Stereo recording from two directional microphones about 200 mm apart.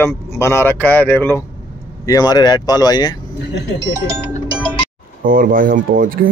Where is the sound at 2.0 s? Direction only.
20° left (ahead or behind).